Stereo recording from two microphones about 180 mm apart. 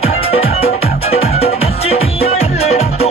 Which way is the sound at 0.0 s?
35° left (ahead or behind).